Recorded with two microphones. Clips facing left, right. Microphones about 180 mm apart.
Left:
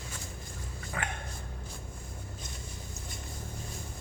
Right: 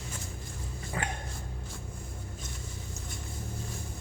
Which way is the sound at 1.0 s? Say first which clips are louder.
Right 2 dB; 30° right (ahead or behind).